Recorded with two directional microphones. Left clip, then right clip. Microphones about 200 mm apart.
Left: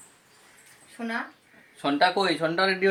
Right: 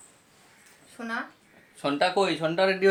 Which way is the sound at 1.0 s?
25° right (ahead or behind).